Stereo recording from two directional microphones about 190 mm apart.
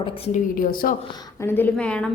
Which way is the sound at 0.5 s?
45° left (ahead or behind).